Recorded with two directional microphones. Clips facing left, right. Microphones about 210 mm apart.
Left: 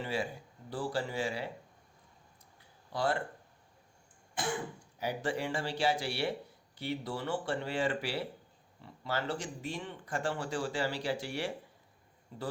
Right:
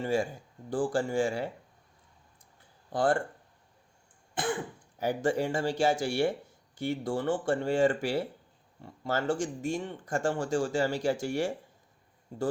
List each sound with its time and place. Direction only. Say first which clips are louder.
0.0 s speech: right 6 dB; 45° right (ahead or behind)
2.9 s speech: right 6 dB; 50° right (ahead or behind)
4.9 s speech: right 6 dB; 45° right (ahead or behind)